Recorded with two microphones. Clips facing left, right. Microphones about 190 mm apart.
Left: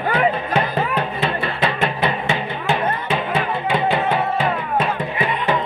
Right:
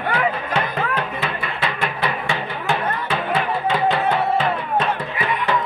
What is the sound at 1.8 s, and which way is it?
Music, 25° left (ahead or behind).